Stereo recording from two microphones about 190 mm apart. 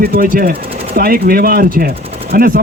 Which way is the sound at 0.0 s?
50° right (ahead or behind).